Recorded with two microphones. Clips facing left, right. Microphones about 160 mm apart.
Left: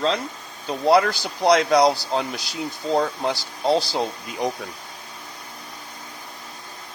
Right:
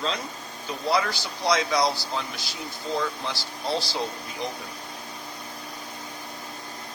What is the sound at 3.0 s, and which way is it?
Speech, 45° left (ahead or behind).